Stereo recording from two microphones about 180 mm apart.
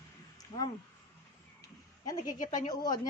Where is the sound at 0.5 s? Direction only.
25° left (ahead or behind).